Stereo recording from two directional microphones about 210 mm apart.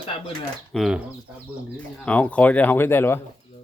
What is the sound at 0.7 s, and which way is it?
Speech, 5° right (ahead or behind).